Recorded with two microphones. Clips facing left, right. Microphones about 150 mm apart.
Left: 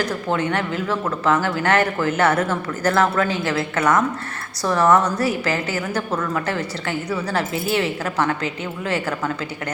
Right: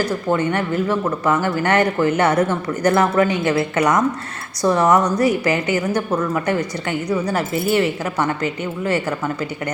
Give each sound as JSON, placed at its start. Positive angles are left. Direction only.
{"t": 0.0, "sound": "speech", "side_deg": -10}